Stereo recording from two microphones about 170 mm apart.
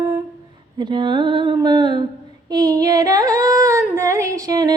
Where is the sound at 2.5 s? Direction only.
25° right (ahead or behind).